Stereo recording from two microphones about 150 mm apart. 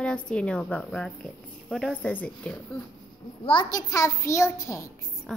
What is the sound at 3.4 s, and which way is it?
A child's voice, 30° left (ahead or behind).